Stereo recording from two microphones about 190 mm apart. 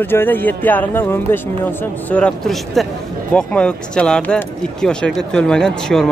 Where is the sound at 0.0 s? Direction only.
10° left (ahead or behind).